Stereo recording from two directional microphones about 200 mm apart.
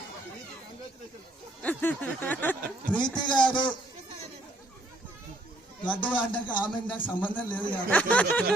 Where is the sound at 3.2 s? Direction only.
20° left (ahead or behind).